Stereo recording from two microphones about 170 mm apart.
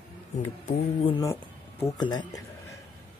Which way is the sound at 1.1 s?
20° left (ahead or behind).